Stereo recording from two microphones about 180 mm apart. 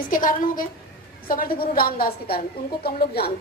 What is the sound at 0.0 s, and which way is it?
A woman's voice, 50° left (ahead or behind).